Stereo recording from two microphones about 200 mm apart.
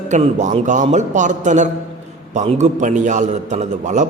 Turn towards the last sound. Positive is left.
turn(degrees=-40)  # may be behind; listen again after turning